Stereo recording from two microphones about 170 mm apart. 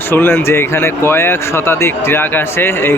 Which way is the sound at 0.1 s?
10° left (ahead or behind).